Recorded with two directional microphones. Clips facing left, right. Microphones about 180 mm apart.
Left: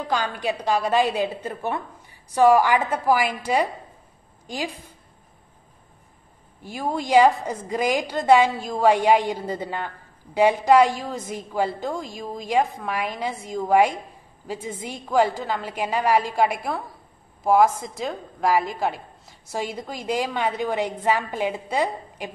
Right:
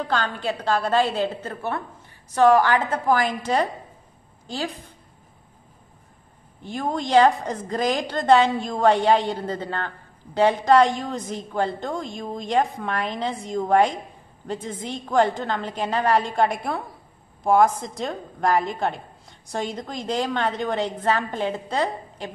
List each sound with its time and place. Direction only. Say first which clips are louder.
0.1 s a woman's voice: left 3 dB; 10° left (ahead or behind)
6.6 s a woman's voice: right 1 dB; 5° left (ahead or behind)